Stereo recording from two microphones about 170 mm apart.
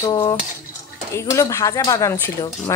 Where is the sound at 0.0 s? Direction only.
25° left (ahead or behind).